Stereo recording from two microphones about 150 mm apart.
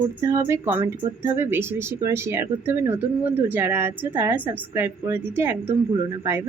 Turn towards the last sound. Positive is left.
turn(degrees=-15)  # may be behind; listen again after turning